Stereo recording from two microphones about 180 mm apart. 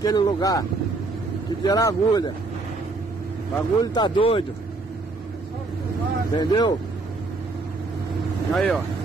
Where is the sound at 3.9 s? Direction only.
25° left (ahead or behind).